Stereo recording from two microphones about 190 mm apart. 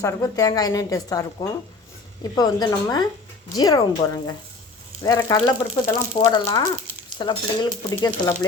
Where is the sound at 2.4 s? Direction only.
20° left (ahead or behind).